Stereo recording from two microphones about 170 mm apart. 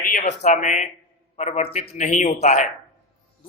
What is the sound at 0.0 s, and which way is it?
A man's voice, 50° left (ahead or behind).